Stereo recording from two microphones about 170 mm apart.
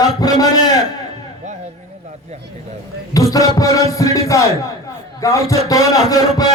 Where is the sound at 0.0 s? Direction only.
20° left (ahead or behind).